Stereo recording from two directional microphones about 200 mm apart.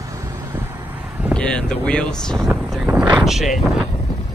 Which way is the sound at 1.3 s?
5° left (ahead or behind).